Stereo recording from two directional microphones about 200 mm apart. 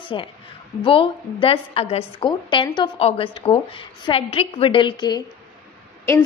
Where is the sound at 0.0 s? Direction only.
25° left (ahead or behind).